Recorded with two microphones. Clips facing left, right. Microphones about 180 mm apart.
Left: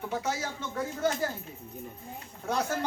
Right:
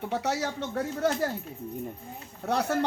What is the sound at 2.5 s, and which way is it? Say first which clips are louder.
Speech: right 3 dB; 65° right (ahead or behind).